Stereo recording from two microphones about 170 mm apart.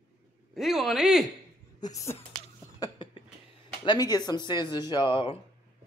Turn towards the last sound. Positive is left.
turn(degrees=30)  # may be behind; listen again after turning